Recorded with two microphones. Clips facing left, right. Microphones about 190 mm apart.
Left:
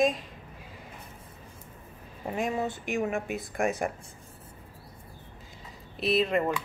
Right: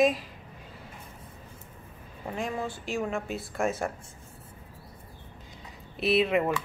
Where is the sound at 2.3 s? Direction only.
20° left (ahead or behind).